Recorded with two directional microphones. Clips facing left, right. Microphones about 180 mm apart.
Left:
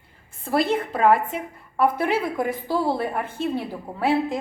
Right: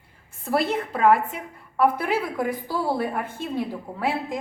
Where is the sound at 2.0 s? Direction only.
25° left (ahead or behind).